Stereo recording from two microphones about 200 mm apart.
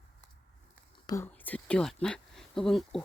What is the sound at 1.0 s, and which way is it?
Speech, 15° left (ahead or behind).